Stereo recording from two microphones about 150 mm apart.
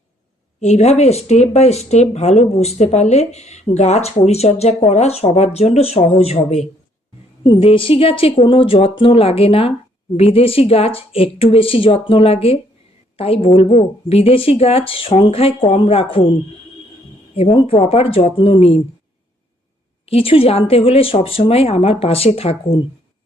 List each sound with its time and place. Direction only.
0.6 s speech: 45° left (ahead or behind)
7.4 s a woman's voice: 35° left (ahead or behind)
17.3 s a woman's voice: 35° left (ahead or behind)
20.1 s a woman's voice: 40° left (ahead or behind)